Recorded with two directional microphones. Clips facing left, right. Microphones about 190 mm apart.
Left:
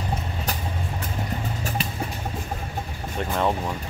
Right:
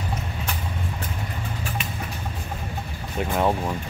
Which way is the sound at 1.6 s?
40° left (ahead or behind).